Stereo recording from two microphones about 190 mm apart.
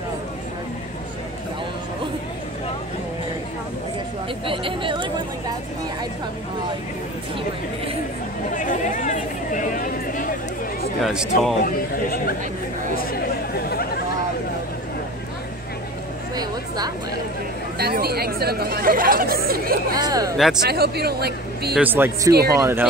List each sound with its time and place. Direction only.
4.5 s speech: 25° right (ahead or behind)
8.5 s chatter: 40° left (ahead or behind)
11.0 s speech: centre (ahead or behind)
11.6 s speech: 50° left (ahead or behind)
16.3 s a sound: 20° right (ahead or behind)
17.7 s speech: 55° right (ahead or behind)
20.0 s speech: 20° right (ahead or behind)
20.6 s speech: 55° right (ahead or behind)
21.7 s a man's voice: 10° right (ahead or behind)